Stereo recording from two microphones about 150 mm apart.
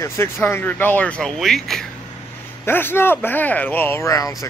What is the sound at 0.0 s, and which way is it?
Speech, 15° left (ahead or behind).